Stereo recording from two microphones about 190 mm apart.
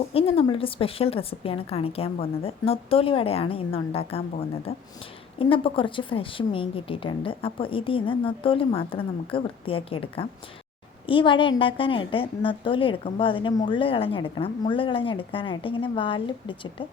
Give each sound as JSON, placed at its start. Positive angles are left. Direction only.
{"t": 0.1, "sound": "a woman's voice", "side_deg": 30}